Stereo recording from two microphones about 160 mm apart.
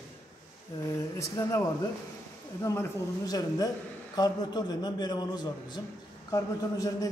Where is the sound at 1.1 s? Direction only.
20° left (ahead or behind).